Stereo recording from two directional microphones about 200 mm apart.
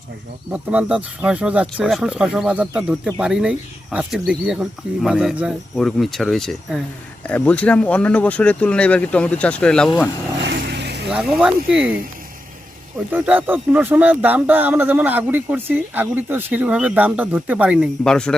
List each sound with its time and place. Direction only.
0.5 s speech: 5° right (ahead or behind)
10.4 s vehicle: 55° right (ahead or behind)
11.1 s speech: 5° right (ahead or behind)
13.1 s speech: 10° right (ahead or behind)